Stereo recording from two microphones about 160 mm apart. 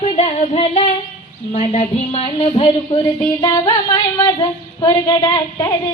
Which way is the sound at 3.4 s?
25° left (ahead or behind).